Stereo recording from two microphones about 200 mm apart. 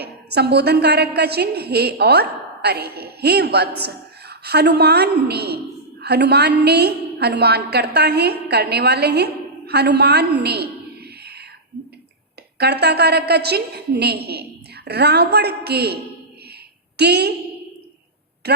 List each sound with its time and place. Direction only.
0.0 s a woman's voice: 55° right (ahead or behind)
12.5 s a woman's voice: 55° right (ahead or behind)
17.0 s a woman's voice: 55° right (ahead or behind)
18.4 s speech: 55° right (ahead or behind)